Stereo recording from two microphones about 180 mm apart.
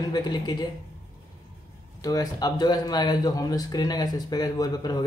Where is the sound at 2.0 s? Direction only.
20° left (ahead or behind).